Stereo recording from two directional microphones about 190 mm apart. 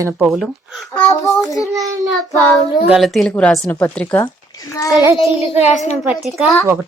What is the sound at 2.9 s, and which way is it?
A woman's voice, centre (ahead or behind).